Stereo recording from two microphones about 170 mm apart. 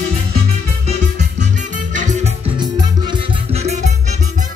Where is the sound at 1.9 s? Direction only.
45° right (ahead or behind).